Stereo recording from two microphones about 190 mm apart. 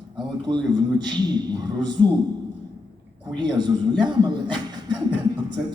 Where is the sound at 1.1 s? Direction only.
20° right (ahead or behind).